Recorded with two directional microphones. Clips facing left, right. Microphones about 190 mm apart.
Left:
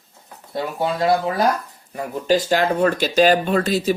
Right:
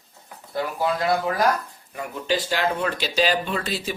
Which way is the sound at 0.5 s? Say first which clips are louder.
Left 2 dB; 30° left (ahead or behind).